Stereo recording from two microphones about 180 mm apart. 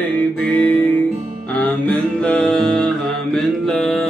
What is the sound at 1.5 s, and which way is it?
Music, 10° left (ahead or behind).